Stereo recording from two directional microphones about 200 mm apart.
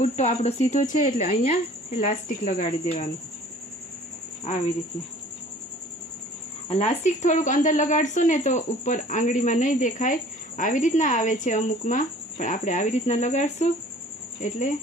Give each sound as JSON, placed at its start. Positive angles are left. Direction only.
{"t": 0.0, "sound": "speech", "side_deg": 35}
{"t": 4.5, "sound": "speech", "side_deg": 35}
{"t": 6.7, "sound": "speech", "side_deg": 30}